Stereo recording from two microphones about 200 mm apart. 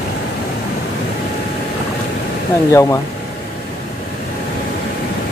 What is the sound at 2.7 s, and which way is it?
Speech, 15° left (ahead or behind).